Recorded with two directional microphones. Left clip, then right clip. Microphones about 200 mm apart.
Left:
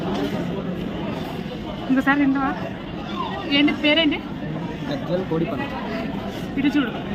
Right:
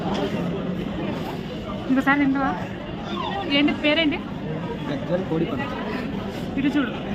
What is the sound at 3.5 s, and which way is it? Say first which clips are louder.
Speech: left 2 dB; 5° left (ahead or behind).